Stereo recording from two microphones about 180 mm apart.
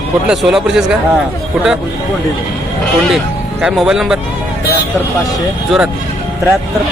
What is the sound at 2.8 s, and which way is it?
Speech, centre (ahead or behind).